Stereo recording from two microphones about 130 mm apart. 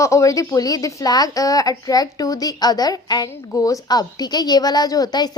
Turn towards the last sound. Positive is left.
turn(degrees=30)  # may be behind; listen again after turning